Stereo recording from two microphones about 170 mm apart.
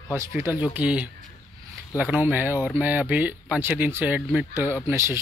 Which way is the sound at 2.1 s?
10° right (ahead or behind).